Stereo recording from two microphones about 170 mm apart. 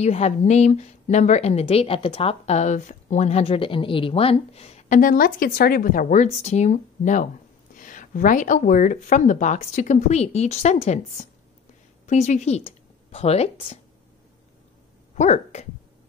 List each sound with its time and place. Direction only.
0.0 s a woman's voice: 40° left (ahead or behind)
15.1 s speech: 40° left (ahead or behind)